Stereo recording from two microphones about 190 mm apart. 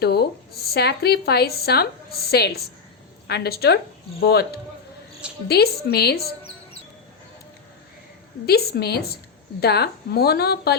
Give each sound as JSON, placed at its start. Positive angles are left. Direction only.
{"t": 0.0, "sound": "speech", "side_deg": 55}
{"t": 5.5, "sound": "speech", "side_deg": 55}
{"t": 8.4, "sound": "speech", "side_deg": 55}